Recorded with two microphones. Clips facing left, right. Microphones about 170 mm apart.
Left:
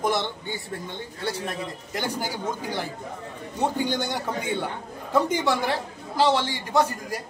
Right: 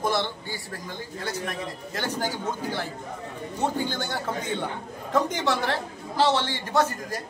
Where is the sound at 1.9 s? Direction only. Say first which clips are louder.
Even; 15° left (ahead or behind).